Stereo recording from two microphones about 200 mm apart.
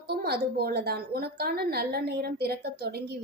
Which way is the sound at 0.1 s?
50° right (ahead or behind).